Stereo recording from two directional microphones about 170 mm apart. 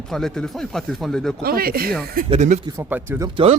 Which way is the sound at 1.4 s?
65° right (ahead or behind).